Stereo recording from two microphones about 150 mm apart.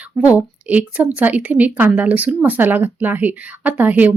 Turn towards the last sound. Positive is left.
turn(degrees=-10)  # may be behind; listen again after turning